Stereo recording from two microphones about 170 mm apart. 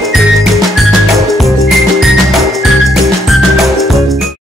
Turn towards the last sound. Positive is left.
turn(degrees=0)  # may be behind; listen again after turning